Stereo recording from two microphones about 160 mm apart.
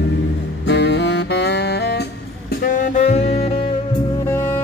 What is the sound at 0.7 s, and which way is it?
Saxophone, 90° left.